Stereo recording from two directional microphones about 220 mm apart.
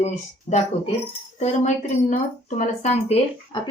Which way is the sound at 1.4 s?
35° left (ahead or behind).